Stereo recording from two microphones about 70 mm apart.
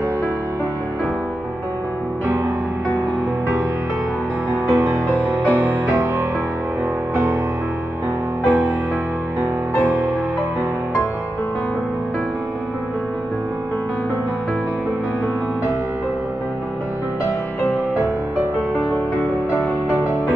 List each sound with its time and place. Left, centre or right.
4.6 s music: right
5.1 s music: right
8.5 s music: right